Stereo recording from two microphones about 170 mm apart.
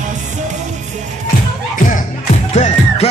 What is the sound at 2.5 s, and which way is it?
Music, 40° left (ahead or behind).